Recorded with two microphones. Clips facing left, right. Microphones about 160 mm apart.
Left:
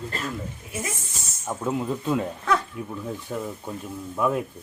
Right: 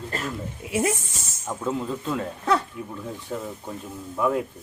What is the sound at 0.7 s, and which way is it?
Speech, 65° right (ahead or behind).